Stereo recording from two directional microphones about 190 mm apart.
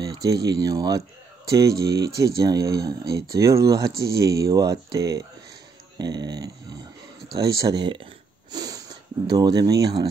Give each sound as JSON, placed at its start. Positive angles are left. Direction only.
{"t": 0.1, "sound": "speech", "side_deg": -20}
{"t": 7.3, "sound": "a sound", "side_deg": -15}
{"t": 9.3, "sound": "speech", "side_deg": -20}